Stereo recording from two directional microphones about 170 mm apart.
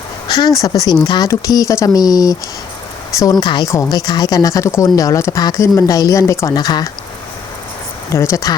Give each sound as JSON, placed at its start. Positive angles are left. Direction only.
{"t": 0.3, "sound": "speech", "side_deg": 25}
{"t": 3.4, "sound": "speech", "side_deg": 25}
{"t": 8.1, "sound": "speech", "side_deg": 15}